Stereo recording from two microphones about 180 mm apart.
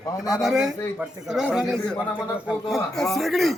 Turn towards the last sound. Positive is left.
turn(degrees=0)  # may be behind; listen again after turning